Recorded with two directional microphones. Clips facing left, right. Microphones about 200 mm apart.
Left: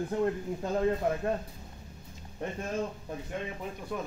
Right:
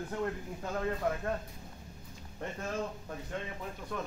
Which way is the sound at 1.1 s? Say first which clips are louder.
Left 3 dB; 25° left (ahead or behind).